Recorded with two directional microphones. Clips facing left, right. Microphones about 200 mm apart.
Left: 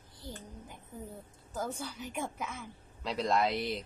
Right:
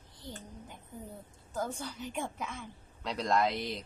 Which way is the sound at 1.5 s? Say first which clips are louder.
Right 1 dB; 5° left (ahead or behind).